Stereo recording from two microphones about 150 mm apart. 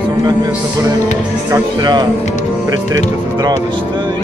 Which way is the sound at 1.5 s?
25° right (ahead or behind).